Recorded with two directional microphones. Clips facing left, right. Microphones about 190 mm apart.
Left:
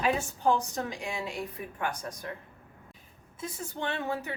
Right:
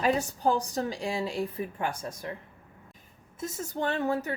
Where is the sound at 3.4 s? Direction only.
45° right (ahead or behind).